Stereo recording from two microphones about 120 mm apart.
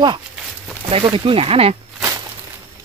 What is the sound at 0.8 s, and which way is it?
Speech, 50° right (ahead or behind).